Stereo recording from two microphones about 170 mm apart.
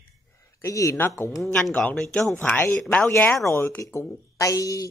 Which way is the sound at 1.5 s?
5° left (ahead or behind).